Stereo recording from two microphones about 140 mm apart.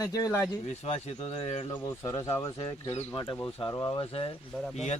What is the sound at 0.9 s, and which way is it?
Speech, 50° left (ahead or behind).